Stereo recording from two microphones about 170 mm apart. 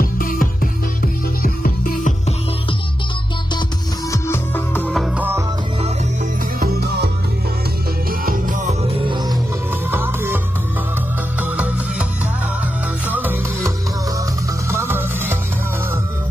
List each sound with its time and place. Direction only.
0.0 s music: 55° left (ahead or behind)
4.1 s music: 15° left (ahead or behind)
4.9 s music: 5° right (ahead or behind)
6.6 s music: 75° right (ahead or behind)
8.1 s music: 55° right (ahead or behind)
9.0 s music: 25° right (ahead or behind)
9.8 s music: 10° right (ahead or behind)
11.4 s music: 10° right (ahead or behind)
13.1 s music: 10° right (ahead or behind)